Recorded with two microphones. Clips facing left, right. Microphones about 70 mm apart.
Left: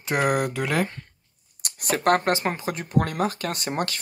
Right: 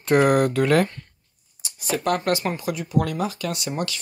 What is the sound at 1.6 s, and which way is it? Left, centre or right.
Speech, left.